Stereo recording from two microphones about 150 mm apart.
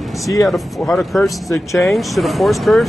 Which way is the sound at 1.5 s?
20° left (ahead or behind).